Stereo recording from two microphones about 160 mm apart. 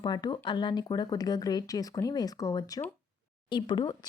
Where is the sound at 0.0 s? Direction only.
30° left (ahead or behind).